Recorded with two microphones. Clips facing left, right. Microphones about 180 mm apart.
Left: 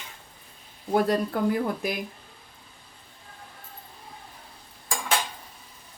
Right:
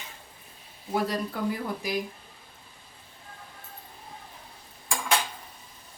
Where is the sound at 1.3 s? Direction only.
50° left (ahead or behind).